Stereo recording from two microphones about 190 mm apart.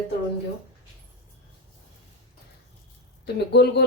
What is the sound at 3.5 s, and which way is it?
Speech, 60° left (ahead or behind).